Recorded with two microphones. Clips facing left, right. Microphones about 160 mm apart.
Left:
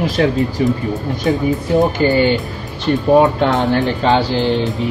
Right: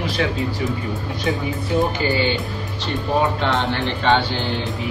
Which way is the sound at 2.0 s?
50° left (ahead or behind).